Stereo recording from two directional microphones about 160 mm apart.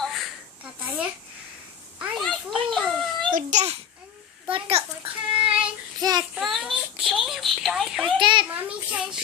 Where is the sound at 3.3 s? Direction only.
50° right (ahead or behind).